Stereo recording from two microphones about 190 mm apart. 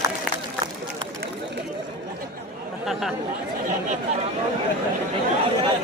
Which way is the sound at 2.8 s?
Centre (ahead or behind).